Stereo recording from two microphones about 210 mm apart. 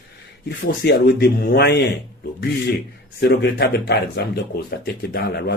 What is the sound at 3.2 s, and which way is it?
Speech, 50° left (ahead or behind).